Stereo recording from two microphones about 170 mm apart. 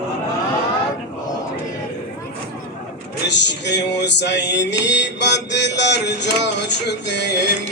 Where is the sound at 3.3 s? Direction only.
90° left.